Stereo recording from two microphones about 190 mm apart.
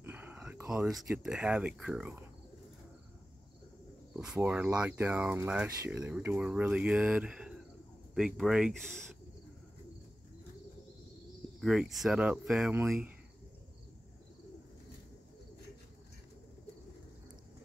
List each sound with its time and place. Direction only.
0.0 s speech: 10° right (ahead or behind)
4.1 s speech: 5° right (ahead or behind)
11.6 s speech: centre (ahead or behind)